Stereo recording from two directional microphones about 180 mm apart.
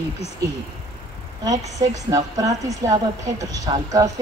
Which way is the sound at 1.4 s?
20° right (ahead or behind).